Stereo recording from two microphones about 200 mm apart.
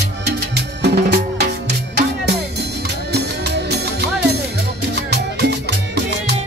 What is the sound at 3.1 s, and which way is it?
Music, 55° right (ahead or behind).